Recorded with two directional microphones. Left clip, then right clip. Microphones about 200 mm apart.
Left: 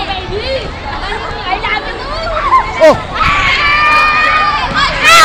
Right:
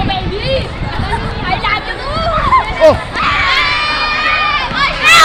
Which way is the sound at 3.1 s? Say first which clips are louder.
Left 2 dB; 55° right (ahead or behind).